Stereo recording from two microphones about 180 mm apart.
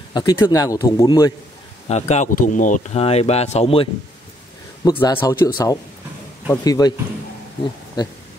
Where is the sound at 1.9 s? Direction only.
40° left (ahead or behind).